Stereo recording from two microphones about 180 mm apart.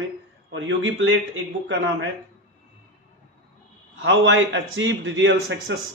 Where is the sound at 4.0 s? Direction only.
90° right.